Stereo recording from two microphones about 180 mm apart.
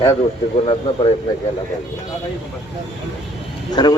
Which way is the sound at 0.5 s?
30° left (ahead or behind).